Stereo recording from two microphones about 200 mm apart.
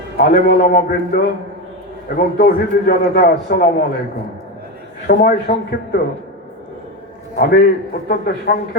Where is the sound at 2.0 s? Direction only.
45° left (ahead or behind).